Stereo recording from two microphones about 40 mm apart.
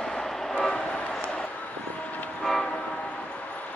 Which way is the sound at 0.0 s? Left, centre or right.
Centre.